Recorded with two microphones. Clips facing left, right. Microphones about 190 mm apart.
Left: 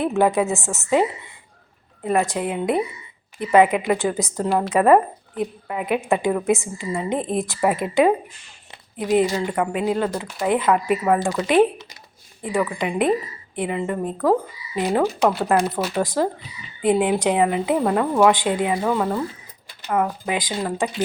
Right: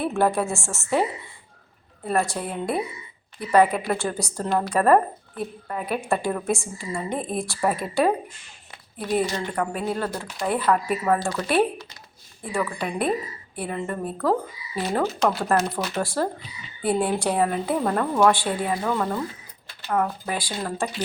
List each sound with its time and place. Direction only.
0.0 s a woman's voice: 15° left (ahead or behind)
2.0 s a woman's voice: 15° left (ahead or behind)
4.4 s a woman's voice: 10° left (ahead or behind)